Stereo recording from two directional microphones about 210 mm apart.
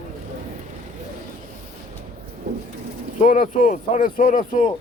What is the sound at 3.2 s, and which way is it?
Speech, 40° left (ahead or behind).